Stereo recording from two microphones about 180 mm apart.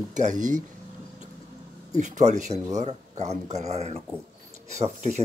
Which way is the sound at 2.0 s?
40° right (ahead or behind).